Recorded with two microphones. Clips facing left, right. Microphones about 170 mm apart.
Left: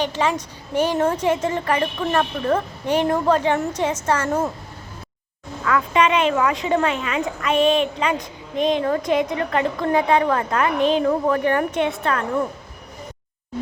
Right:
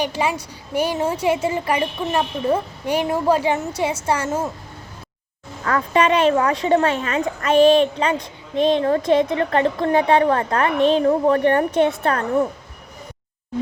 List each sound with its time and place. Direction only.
0.0 s a woman's voice: 10° right (ahead or behind)
5.6 s speech: 40° right (ahead or behind)